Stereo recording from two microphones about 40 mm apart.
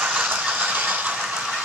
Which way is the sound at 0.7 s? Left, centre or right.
Right.